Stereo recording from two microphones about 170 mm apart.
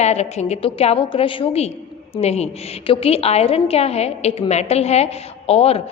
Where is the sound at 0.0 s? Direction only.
40° left (ahead or behind).